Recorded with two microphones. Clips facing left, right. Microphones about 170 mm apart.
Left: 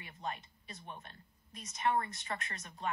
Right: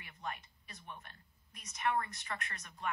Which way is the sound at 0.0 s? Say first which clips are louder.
Left 2 dB; 25° left (ahead or behind).